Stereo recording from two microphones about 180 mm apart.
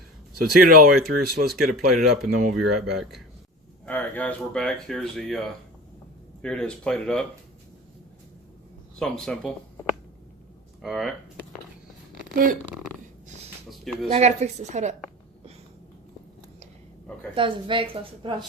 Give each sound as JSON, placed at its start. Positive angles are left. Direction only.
{"t": 0.9, "sound": "speech", "side_deg": 0}
{"t": 1.1, "sound": "speech", "side_deg": -55}
{"t": 1.5, "sound": "speech", "side_deg": 0}
{"t": 6.4, "sound": "speech", "side_deg": 5}
{"t": 9.0, "sound": "speech", "side_deg": 5}
{"t": 10.8, "sound": "speech", "side_deg": 0}
{"t": 12.3, "sound": "speech", "side_deg": -50}
{"t": 13.7, "sound": "a sound", "side_deg": 0}
{"t": 14.1, "sound": "a woman's voice", "side_deg": -35}
{"t": 17.3, "sound": "a woman's voice", "side_deg": -30}